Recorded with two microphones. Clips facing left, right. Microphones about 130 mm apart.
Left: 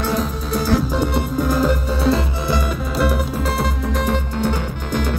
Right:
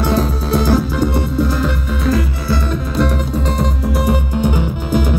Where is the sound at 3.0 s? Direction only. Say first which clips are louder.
Right 2 dB; 5° left (ahead or behind).